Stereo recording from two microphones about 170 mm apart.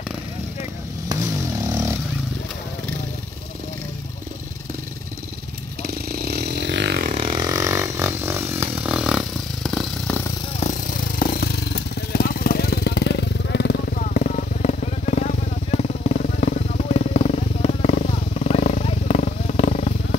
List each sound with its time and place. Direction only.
1.6 s vehicle: 20° right (ahead or behind)
5.8 s motorcycle: 65° right (ahead or behind)
7.2 s vehicle: 25° right (ahead or behind); by 10.3 s 10° left (ahead or behind)
10.6 s a sound: 55° left (ahead or behind)
12.1 s jackhammer: 60° left (ahead or behind); by 13.7 s 90° left
13.9 s vehicle: 50° left (ahead or behind)